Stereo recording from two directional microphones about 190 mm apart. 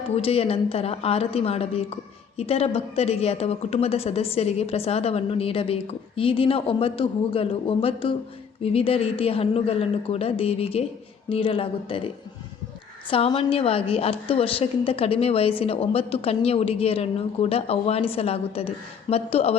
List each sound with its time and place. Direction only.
0.2 s a woman's voice: 30° left (ahead or behind)